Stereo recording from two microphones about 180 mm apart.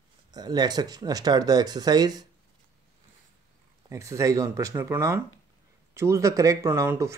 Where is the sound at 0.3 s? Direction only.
20° right (ahead or behind).